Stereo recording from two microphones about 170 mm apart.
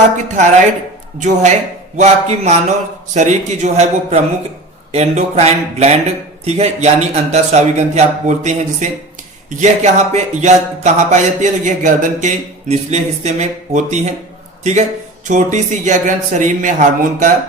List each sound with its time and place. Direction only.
0.3 s a man's voice: 45° right (ahead or behind)